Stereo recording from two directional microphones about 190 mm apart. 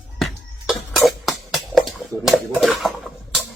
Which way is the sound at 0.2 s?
Centre (ahead or behind).